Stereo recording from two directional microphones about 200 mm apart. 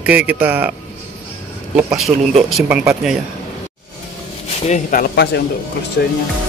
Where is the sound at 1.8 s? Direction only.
Centre (ahead or behind).